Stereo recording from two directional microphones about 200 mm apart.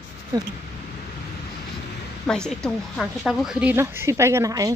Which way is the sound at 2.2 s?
5° left (ahead or behind).